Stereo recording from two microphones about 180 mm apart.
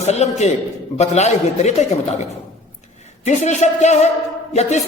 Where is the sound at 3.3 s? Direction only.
40° left (ahead or behind).